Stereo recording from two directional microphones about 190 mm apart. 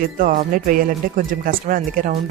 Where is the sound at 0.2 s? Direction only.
45° right (ahead or behind).